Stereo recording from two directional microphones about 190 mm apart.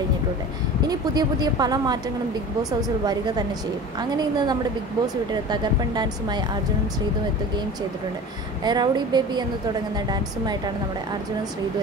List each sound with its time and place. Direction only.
0.8 s speech: 20° right (ahead or behind)
4.2 s speech: 20° right (ahead or behind)
8.6 s speech: 20° right (ahead or behind)